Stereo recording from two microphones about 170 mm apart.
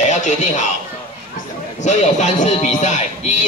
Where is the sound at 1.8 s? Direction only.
45° left (ahead or behind).